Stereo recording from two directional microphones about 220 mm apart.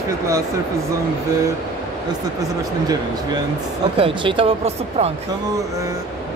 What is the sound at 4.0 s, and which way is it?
Speech, 25° right (ahead or behind).